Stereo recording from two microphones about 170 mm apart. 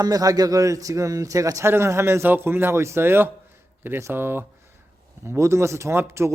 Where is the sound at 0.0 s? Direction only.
20° right (ahead or behind).